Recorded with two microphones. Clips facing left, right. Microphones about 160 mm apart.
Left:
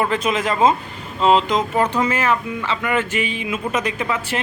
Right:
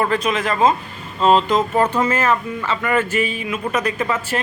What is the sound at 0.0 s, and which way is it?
A man's voice, 20° left (ahead or behind).